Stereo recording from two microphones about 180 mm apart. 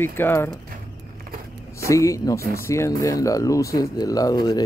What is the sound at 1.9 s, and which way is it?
Speech, 15° left (ahead or behind).